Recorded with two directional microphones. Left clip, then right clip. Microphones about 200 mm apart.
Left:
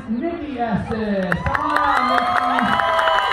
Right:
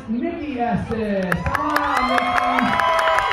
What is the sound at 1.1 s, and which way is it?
Crowd, 20° right (ahead or behind).